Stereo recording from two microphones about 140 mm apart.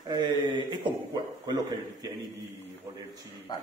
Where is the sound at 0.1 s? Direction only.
35° right (ahead or behind).